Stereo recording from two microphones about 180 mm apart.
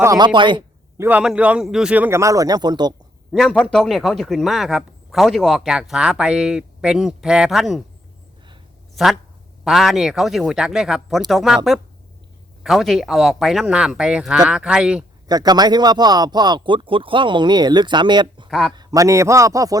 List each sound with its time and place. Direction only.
0.0 s speech: 20° right (ahead or behind)
0.9 s a man's voice: 10° right (ahead or behind)
3.3 s speech: 5° left (ahead or behind)
9.6 s speech: centre (ahead or behind)
15.3 s a man's voice: 20° right (ahead or behind)